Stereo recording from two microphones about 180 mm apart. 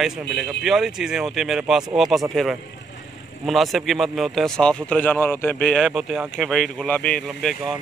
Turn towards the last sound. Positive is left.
turn(degrees=0)  # may be behind; listen again after turning